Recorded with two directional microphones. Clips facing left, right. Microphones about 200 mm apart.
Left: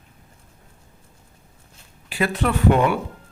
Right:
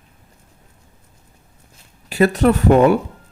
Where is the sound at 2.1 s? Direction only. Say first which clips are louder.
Right 8 dB; 40° right (ahead or behind).